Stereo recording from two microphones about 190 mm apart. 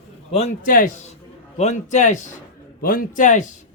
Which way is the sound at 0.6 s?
45° left (ahead or behind).